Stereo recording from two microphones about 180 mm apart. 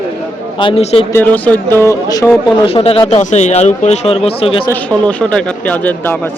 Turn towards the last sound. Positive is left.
turn(degrees=10)  # may be behind; listen again after turning